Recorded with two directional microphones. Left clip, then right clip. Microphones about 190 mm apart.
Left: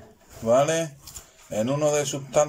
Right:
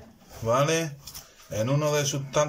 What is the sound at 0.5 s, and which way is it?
A man's voice, 5° left (ahead or behind).